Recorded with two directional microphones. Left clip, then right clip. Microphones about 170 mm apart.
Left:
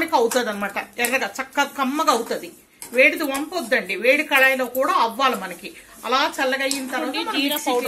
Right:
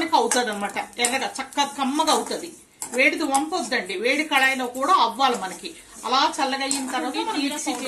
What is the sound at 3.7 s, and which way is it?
A woman's voice, 20° left (ahead or behind).